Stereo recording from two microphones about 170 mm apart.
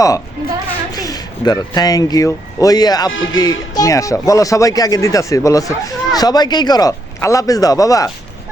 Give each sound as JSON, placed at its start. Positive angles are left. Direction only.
{"t": 0.4, "sound": "a woman's voice", "side_deg": 60}
{"t": 0.9, "sound": "speech", "side_deg": 20}